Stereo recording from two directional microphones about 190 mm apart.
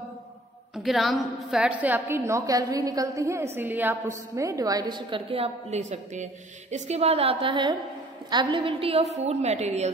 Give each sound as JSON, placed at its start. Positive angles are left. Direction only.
{"t": 0.8, "sound": "a woman's voice", "side_deg": 0}